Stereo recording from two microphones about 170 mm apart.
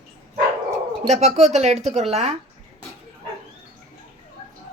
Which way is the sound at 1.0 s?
40° right (ahead or behind).